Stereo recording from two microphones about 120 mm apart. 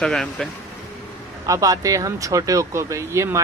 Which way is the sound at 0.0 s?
5° left (ahead or behind).